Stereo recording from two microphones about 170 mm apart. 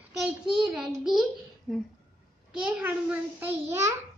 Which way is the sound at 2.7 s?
10° right (ahead or behind).